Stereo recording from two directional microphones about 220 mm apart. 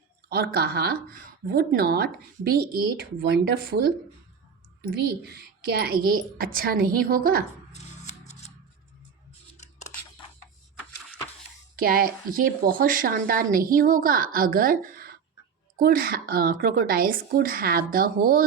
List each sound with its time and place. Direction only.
0.3 s a child's voice: 45° right (ahead or behind)
4.8 s a child's voice: 50° right (ahead or behind)
7.7 s scissors: 30° left (ahead or behind)
11.8 s a woman's voice: 40° right (ahead or behind)